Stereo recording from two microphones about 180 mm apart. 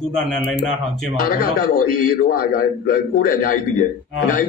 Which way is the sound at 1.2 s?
50° left (ahead or behind).